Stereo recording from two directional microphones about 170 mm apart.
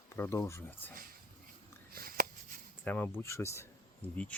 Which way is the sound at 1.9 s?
60° right (ahead or behind).